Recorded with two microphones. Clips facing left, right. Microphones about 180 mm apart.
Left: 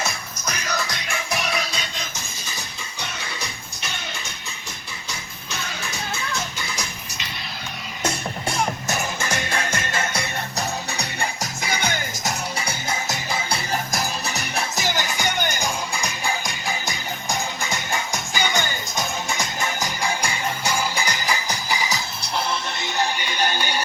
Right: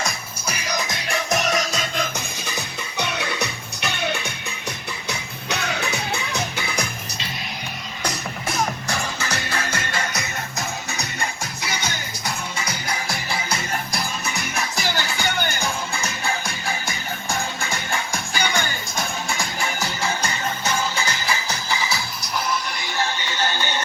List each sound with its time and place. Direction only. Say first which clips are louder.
0.4 s music: right 1 dB; 10° right (ahead or behind)
1.0 s music: right 4 dB; 40° right (ahead or behind)
3.0 s music: right 8 dB; 65° right (ahead or behind)
9.5 s music: left 1 dB; 25° left (ahead or behind)
11.6 s music: left 4 dB; 50° left (ahead or behind)
12.5 s music: left 1 dB; 25° left (ahead or behind)
13.9 s music: left 1 dB; 40° left (ahead or behind)
14.8 s music: even; 20° left (ahead or behind)
22.2 s music: even; 30° left (ahead or behind)